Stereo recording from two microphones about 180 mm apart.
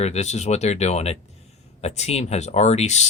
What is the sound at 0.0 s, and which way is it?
Speech, 40° left (ahead or behind).